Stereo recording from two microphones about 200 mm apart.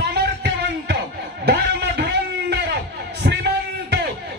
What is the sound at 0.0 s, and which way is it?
Music, 55° right (ahead or behind).